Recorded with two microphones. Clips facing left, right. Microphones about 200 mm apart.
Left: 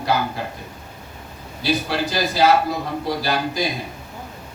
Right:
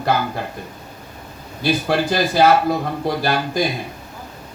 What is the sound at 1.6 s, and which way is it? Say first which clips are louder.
Speech: right 4 dB; 50° right (ahead or behind).